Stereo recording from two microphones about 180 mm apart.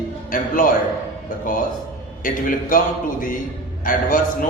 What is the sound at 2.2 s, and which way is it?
A man's voice, 50° left (ahead or behind).